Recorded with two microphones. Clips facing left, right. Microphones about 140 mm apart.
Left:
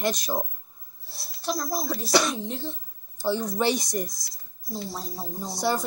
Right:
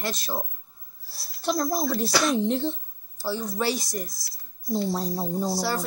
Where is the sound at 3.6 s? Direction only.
20° left (ahead or behind).